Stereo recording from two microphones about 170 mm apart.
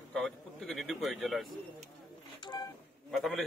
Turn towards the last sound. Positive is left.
turn(degrees=0)  # may be behind; listen again after turning